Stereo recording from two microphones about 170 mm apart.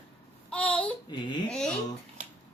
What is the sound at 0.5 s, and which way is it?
Babbling, 10° left (ahead or behind).